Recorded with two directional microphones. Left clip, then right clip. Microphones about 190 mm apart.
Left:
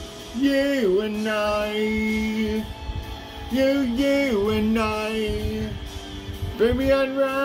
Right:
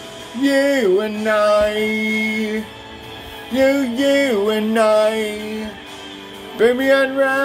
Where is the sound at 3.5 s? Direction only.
25° left (ahead or behind).